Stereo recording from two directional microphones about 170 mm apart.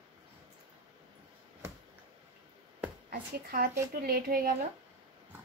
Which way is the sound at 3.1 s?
55° right (ahead or behind).